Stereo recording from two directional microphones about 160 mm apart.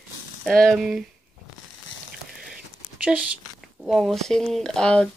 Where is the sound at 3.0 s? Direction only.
5° right (ahead or behind).